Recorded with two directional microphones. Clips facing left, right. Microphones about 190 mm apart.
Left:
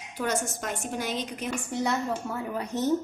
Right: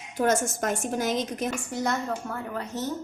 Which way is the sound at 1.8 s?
5° left (ahead or behind).